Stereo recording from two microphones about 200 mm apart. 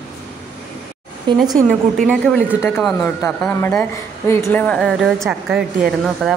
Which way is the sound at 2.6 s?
10° left (ahead or behind).